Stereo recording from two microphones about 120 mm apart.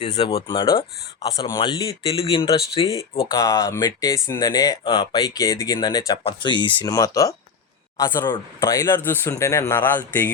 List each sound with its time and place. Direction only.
0.0 s speech: 40° left (ahead or behind)
2.0 s speech: 55° left (ahead or behind)
3.2 s speech: 25° left (ahead or behind)
6.9 s speech: 30° left (ahead or behind)